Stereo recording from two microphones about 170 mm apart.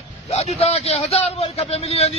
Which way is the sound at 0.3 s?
40° left (ahead or behind).